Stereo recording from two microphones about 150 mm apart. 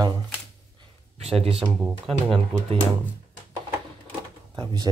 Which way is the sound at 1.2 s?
40° right (ahead or behind).